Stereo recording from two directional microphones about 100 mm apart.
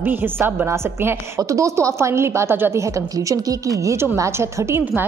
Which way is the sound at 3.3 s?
35° right (ahead or behind).